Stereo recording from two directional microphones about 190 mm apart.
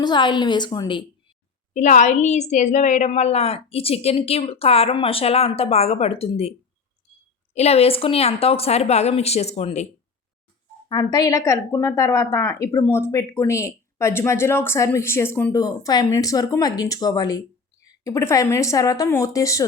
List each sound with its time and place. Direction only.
0.0 s a woman's voice: 25° left (ahead or behind)
1.7 s a woman's voice: 40° left (ahead or behind)
7.5 s a woman's voice: 35° left (ahead or behind)
10.8 s a woman's voice: 20° left (ahead or behind)